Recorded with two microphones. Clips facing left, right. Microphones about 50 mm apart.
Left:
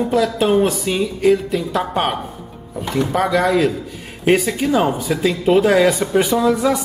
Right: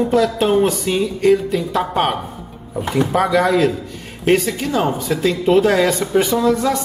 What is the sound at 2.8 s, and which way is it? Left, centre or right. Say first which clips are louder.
Speech: right 2 dB; centre.